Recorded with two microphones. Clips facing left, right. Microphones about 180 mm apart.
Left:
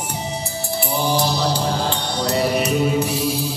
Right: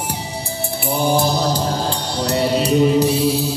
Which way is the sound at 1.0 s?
55° right (ahead or behind).